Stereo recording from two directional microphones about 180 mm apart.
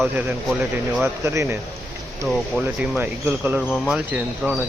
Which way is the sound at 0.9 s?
15° right (ahead or behind).